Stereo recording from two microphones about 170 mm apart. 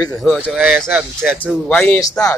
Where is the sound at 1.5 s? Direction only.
5° left (ahead or behind).